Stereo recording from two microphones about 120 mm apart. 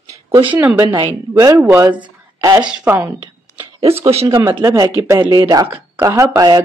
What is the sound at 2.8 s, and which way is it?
Speech, 20° right (ahead or behind).